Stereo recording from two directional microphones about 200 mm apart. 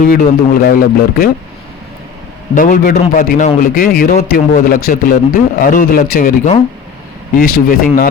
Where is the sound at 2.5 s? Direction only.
40° left (ahead or behind).